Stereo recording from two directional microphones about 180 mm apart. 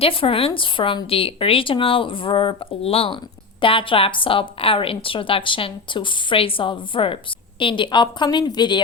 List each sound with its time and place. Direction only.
0.0 s a woman's voice: 30° left (ahead or behind)